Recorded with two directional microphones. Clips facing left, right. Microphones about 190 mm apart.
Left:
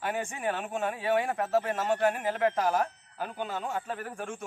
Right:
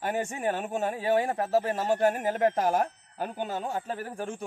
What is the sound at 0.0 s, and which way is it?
A man's voice, 40° right (ahead or behind).